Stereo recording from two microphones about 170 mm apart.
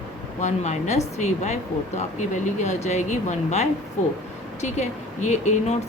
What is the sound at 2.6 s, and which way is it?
Speech, 40° left (ahead or behind).